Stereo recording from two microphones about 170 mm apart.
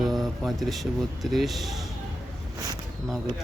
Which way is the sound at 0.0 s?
Centre (ahead or behind).